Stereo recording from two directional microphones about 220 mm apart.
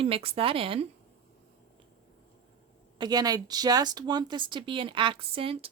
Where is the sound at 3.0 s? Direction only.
20° right (ahead or behind).